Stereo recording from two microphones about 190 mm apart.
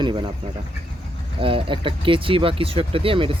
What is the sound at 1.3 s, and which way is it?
Speech, 25° right (ahead or behind).